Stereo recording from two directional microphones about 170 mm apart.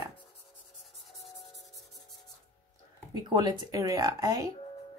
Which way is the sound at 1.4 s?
Centre (ahead or behind).